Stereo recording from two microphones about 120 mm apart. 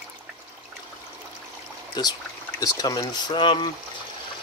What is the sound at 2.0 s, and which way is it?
Speech, 35° left (ahead or behind).